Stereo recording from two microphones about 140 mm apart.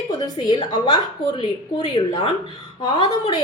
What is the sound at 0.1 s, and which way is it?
A woman's voice, 30° left (ahead or behind).